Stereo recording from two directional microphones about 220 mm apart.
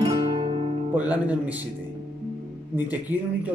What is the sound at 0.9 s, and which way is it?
Speech, 5° right (ahead or behind).